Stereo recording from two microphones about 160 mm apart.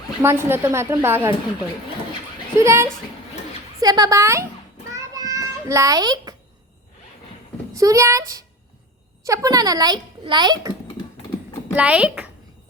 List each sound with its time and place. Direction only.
0.2 s a woman's voice: 15° right (ahead or behind)
2.6 s a woman's voice: 15° right (ahead or behind)
5.1 s a sound: 20° right (ahead or behind)
7.7 s a child's voice: 20° right (ahead or behind)
11.7 s a woman's voice: 10° right (ahead or behind)